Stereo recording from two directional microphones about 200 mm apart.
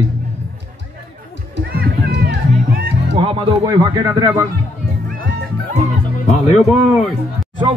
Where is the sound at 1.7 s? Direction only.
55° right (ahead or behind).